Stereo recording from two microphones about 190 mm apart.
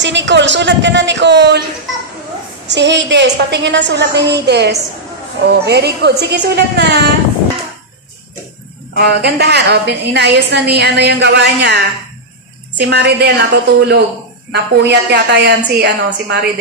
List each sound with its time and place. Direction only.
0.0 s a woman's voice: 70° right (ahead or behind)
2.7 s a woman's voice: 65° right (ahead or behind)
8.9 s a woman's voice: 60° right (ahead or behind)
12.7 s a woman's voice: 60° right (ahead or behind)